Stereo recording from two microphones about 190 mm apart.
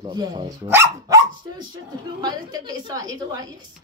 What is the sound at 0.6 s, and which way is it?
A woman's voice, 15° right (ahead or behind).